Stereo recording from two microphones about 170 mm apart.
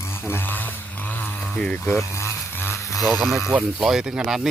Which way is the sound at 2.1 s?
15° left (ahead or behind).